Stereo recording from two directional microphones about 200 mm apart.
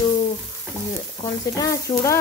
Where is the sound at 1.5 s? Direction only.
15° left (ahead or behind).